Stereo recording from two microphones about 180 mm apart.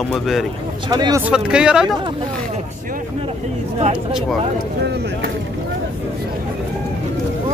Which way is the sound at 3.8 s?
30° right (ahead or behind).